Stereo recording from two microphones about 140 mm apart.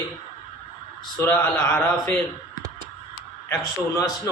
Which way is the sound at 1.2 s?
15° left (ahead or behind).